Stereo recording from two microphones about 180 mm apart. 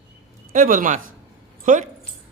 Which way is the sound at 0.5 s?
50° right (ahead or behind).